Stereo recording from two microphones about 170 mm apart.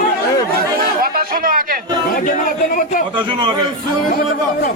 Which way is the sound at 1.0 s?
60° right (ahead or behind).